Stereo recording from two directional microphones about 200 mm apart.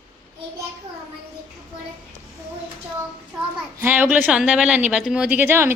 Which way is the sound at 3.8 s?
10° right (ahead or behind).